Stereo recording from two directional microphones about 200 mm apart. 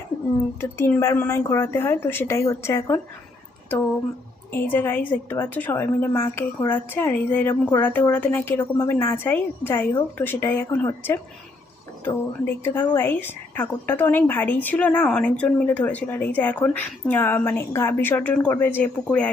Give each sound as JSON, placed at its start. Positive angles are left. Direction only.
{"t": 0.6, "sound": "a woman's voice", "side_deg": 10}
{"t": 4.5, "sound": "a woman's voice", "side_deg": 10}